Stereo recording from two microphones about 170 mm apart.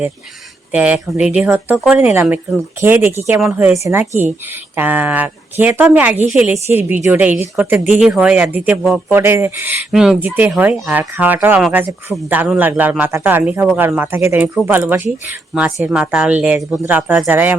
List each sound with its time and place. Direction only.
0.7 s speech: 5° right (ahead or behind)